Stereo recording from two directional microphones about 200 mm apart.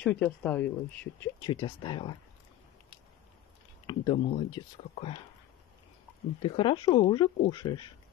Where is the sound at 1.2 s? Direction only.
20° left (ahead or behind).